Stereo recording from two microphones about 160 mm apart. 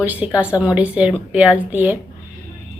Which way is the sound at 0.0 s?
10° right (ahead or behind).